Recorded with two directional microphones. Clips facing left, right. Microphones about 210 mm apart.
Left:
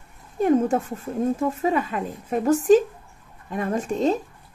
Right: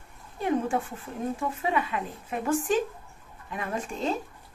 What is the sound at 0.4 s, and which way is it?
A child's voice, 45° left (ahead or behind).